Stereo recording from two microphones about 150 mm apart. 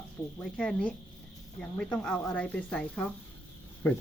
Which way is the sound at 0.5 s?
5° left (ahead or behind).